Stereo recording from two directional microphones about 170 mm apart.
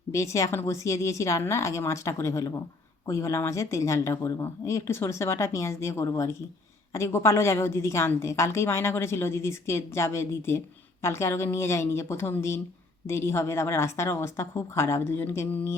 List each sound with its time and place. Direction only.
0.1 s a woman's voice: 15° left (ahead or behind)